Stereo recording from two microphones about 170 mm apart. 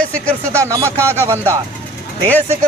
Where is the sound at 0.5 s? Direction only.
15° right (ahead or behind).